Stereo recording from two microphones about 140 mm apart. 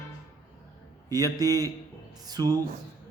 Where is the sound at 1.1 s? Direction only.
25° right (ahead or behind).